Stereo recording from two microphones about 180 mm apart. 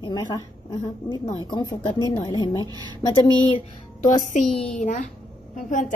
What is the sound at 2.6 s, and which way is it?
Speech, 20° right (ahead or behind).